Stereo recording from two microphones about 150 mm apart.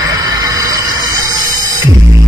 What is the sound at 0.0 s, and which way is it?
Music, 25° right (ahead or behind).